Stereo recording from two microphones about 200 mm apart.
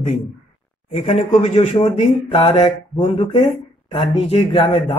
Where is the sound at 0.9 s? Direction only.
35° left (ahead or behind).